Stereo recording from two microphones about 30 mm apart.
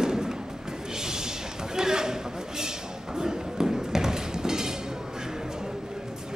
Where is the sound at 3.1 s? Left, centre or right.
Centre.